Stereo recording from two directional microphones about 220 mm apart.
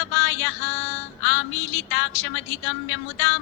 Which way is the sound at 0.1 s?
65° left (ahead or behind).